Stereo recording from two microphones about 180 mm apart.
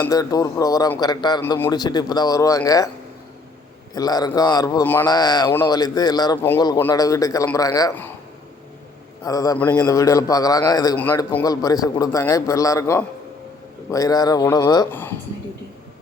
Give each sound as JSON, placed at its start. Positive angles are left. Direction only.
{"t": 0.0, "sound": "speech", "side_deg": 20}
{"t": 3.9, "sound": "speech", "side_deg": 20}
{"t": 5.0, "sound": "speech", "side_deg": 25}
{"t": 9.2, "sound": "speech", "side_deg": 20}
{"t": 10.9, "sound": "a man's voice", "side_deg": 10}